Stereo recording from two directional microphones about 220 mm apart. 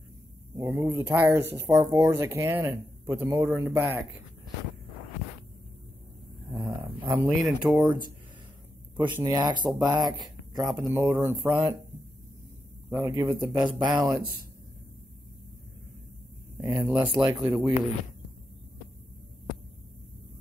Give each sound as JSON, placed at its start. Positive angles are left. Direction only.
{"t": 0.6, "sound": "speech", "side_deg": -10}
{"t": 6.5, "sound": "speech", "side_deg": -15}
{"t": 9.0, "sound": "speech", "side_deg": -15}
{"t": 12.9, "sound": "speech", "side_deg": -15}
{"t": 16.5, "sound": "speech", "side_deg": -15}